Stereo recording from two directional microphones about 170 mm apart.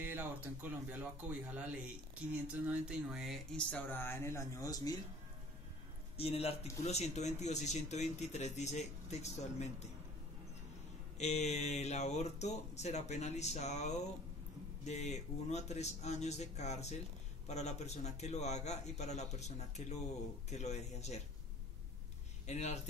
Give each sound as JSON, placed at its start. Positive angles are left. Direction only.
{"t": 0.0, "sound": "speech", "side_deg": -10}
{"t": 2.4, "sound": "speech", "side_deg": -5}
{"t": 6.1, "sound": "speech", "side_deg": 35}
{"t": 11.1, "sound": "speech", "side_deg": 40}
{"t": 22.5, "sound": "speech", "side_deg": 40}